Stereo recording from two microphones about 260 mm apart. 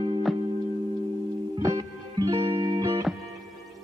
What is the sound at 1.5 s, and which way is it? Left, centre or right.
Music, centre.